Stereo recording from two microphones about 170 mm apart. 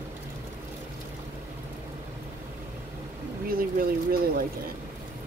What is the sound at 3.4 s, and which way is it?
Speech, 60° right (ahead or behind).